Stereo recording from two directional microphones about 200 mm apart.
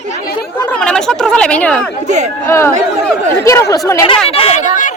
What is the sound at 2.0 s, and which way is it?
Speech, 35° right (ahead or behind).